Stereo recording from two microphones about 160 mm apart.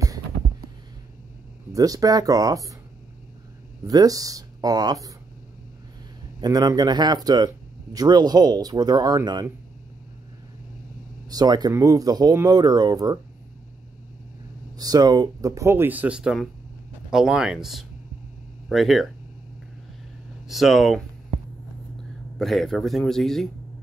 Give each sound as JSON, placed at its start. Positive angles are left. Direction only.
{"t": 0.0, "sound": "a sound", "side_deg": -20}
{"t": 1.7, "sound": "speech", "side_deg": -20}
{"t": 3.8, "sound": "speech", "side_deg": -25}
{"t": 6.4, "sound": "speech", "side_deg": -25}
{"t": 11.2, "sound": "speech", "side_deg": -25}
{"t": 14.8, "sound": "speech", "side_deg": -25}
{"t": 20.4, "sound": "speech", "side_deg": 0}
{"t": 22.4, "sound": "speech", "side_deg": 0}